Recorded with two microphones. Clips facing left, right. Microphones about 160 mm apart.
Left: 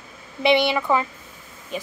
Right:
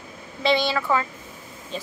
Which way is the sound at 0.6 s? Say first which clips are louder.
Left 2 dB; 20° left (ahead or behind).